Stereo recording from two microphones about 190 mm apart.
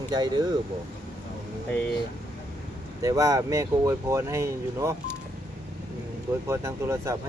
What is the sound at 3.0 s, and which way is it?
Speech, 20° right (ahead or behind).